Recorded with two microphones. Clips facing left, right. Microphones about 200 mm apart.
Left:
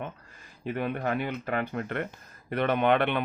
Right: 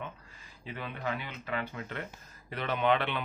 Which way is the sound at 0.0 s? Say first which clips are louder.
Left 5 dB; 50° left (ahead or behind).